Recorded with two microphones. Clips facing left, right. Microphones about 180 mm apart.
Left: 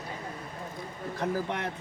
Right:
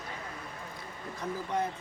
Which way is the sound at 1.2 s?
70° left (ahead or behind).